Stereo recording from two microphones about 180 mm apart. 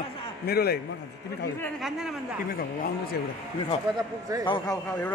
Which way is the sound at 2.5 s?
55° left (ahead or behind).